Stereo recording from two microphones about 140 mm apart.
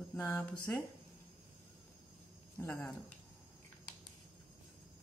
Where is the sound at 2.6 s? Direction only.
15° left (ahead or behind).